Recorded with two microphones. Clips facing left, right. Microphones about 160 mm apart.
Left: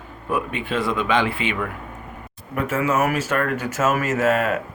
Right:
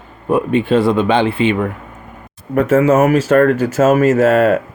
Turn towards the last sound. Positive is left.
turn(degrees=-35)  # may be behind; listen again after turning